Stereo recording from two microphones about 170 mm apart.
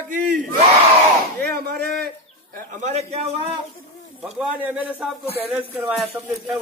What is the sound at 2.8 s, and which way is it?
Speech, 40° right (ahead or behind).